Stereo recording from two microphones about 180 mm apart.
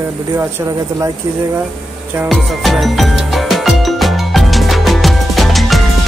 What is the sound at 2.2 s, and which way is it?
Music, centre (ahead or behind).